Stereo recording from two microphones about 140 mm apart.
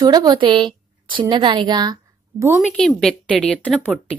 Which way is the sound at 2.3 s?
15° right (ahead or behind).